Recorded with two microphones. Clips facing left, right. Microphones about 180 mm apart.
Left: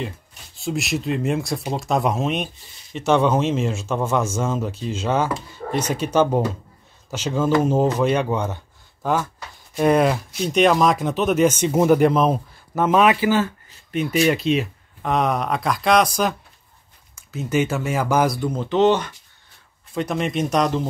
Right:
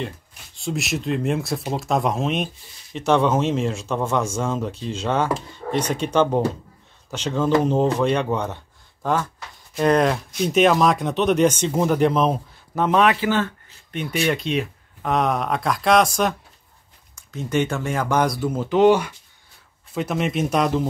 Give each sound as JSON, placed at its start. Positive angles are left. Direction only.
{"t": 0.6, "sound": "speech", "side_deg": 0}